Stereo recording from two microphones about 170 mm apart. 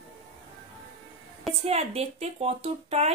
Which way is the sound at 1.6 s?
35° right (ahead or behind).